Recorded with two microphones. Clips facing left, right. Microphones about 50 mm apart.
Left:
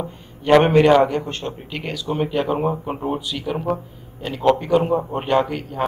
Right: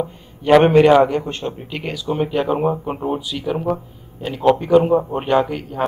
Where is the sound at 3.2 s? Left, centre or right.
Centre.